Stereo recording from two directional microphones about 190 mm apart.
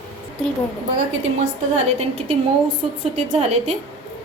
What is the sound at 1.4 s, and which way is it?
Speech, 35° right (ahead or behind).